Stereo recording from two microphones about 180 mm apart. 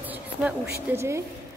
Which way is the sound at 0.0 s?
10° right (ahead or behind).